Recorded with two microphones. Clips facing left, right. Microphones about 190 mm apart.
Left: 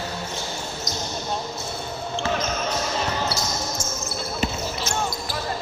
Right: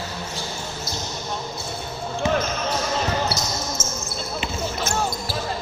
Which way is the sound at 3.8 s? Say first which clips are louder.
Even; 25° right (ahead or behind).